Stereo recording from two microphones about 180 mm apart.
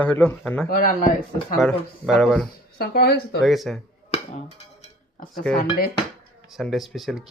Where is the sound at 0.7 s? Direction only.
55° left (ahead or behind).